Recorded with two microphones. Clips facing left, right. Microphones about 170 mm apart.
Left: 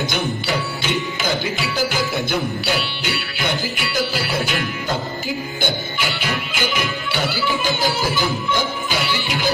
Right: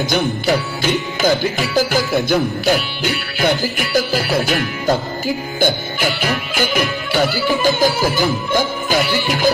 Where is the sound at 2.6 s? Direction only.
45° right (ahead or behind).